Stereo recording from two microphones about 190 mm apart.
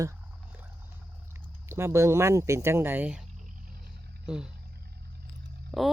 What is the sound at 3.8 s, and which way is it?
Roaring cats, 5° right (ahead or behind).